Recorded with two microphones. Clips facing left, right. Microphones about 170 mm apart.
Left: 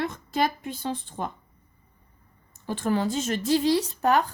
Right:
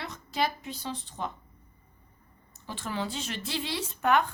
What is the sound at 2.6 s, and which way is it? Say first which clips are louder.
Speech: left 9 dB; 50° left (ahead or behind).